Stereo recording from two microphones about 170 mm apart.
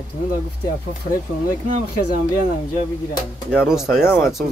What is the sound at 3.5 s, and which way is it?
Speech, 5° right (ahead or behind).